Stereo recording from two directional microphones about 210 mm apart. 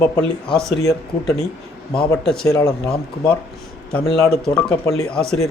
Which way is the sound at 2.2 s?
Centre (ahead or behind).